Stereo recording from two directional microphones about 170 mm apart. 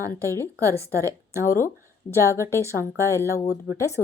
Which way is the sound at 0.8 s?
15° right (ahead or behind).